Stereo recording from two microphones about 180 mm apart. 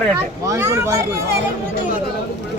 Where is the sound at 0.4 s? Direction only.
15° right (ahead or behind).